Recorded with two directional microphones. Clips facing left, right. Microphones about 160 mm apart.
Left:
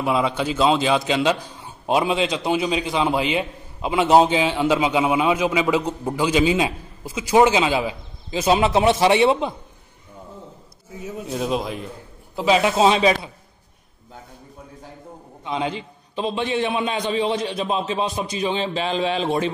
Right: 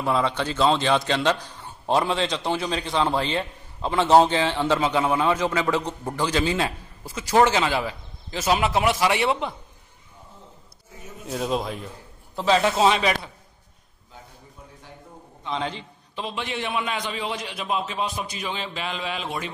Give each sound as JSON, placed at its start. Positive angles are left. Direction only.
{"t": 0.0, "sound": "a man's voice", "side_deg": 10}
{"t": 11.2, "sound": "a man's voice", "side_deg": 0}
{"t": 12.4, "sound": "a man's voice", "side_deg": 15}
{"t": 15.4, "sound": "a man's voice", "side_deg": 15}